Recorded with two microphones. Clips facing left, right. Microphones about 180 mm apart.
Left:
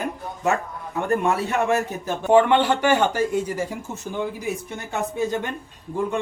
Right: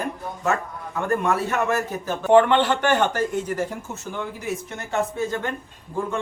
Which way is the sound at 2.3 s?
10° left (ahead or behind).